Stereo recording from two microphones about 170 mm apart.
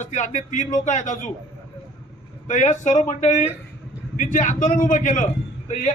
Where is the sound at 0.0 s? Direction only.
45° left (ahead or behind).